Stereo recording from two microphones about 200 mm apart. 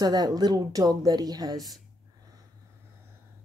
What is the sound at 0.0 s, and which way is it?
A woman's voice, 20° right (ahead or behind).